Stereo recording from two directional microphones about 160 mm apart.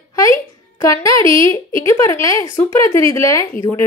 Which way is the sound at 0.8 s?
20° left (ahead or behind).